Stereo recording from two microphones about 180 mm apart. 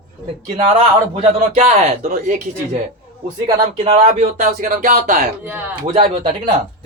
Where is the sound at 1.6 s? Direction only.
35° right (ahead or behind).